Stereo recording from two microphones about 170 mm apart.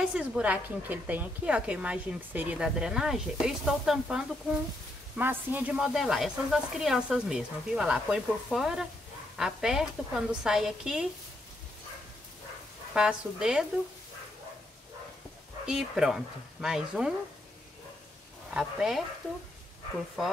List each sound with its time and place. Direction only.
0.0 s a woman's voice: 5° right (ahead or behind)
5.1 s speech: 10° right (ahead or behind)
12.9 s speech: 5° right (ahead or behind)
15.6 s speech: 5° right (ahead or behind)
18.5 s speech: 5° right (ahead or behind)